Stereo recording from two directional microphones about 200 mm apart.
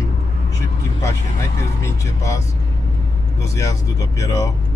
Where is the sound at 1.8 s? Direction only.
15° left (ahead or behind).